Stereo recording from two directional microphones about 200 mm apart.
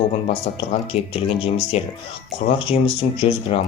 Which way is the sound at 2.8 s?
30° left (ahead or behind).